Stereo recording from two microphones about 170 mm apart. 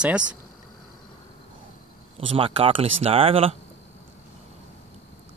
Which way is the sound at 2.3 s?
30° right (ahead or behind).